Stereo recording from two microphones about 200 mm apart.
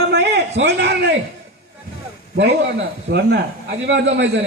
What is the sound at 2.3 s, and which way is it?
A man's voice, 55° right (ahead or behind).